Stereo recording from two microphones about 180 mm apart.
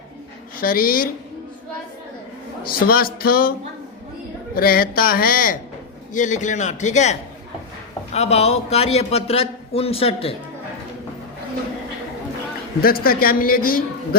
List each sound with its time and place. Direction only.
0.6 s speech: 55° left (ahead or behind)
2.8 s a man's voice: 55° left (ahead or behind)
4.5 s a man's voice: 55° left (ahead or behind); by 10.3 s 35° left (ahead or behind)
12.8 s a man's voice: 55° left (ahead or behind)